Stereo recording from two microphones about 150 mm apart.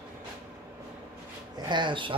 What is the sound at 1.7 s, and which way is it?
Speech, 30° right (ahead or behind).